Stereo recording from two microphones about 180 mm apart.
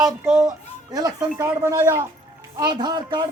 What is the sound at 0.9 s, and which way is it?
Speech, 20° right (ahead or behind).